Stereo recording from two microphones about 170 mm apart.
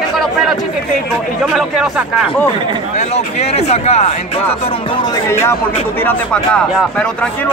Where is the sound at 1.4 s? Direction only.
Centre (ahead or behind).